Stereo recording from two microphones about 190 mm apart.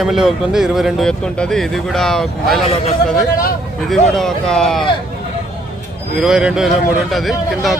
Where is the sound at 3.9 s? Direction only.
Centre (ahead or behind).